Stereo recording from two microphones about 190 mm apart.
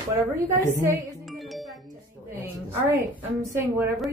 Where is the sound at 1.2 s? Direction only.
Centre (ahead or behind).